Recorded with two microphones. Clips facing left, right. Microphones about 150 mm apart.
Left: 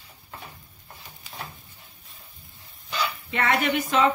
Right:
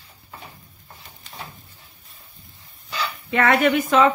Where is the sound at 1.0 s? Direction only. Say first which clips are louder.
Even; centre (ahead or behind).